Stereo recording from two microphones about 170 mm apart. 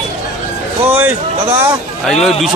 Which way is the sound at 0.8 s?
10° right (ahead or behind).